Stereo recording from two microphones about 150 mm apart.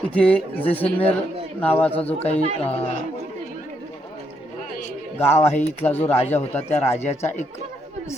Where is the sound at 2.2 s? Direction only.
45° left (ahead or behind).